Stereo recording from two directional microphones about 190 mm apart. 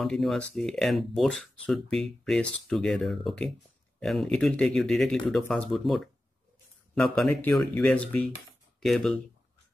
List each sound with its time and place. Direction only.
0.0 s speech: centre (ahead or behind)